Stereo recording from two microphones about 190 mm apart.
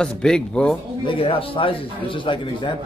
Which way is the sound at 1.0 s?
25° left (ahead or behind).